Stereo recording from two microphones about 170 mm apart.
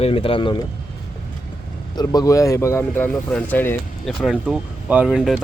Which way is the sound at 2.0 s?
20° left (ahead or behind).